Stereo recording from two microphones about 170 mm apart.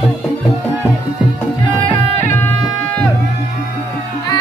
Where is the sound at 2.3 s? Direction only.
15° left (ahead or behind).